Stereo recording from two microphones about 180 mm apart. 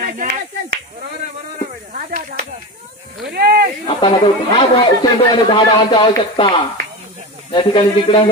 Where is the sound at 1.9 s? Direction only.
50° right (ahead or behind).